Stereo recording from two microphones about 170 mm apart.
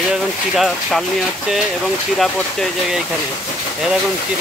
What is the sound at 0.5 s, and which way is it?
Speech, centre (ahead or behind).